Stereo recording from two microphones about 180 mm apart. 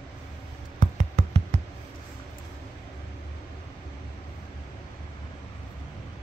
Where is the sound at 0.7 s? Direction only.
40° right (ahead or behind).